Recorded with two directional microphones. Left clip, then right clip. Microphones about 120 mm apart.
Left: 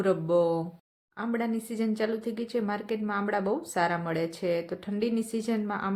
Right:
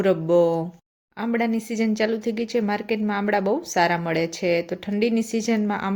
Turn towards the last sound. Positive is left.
turn(degrees=-20)  # may be behind; listen again after turning